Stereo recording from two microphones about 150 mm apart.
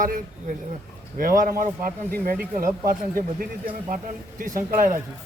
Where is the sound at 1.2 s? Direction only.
70° right (ahead or behind).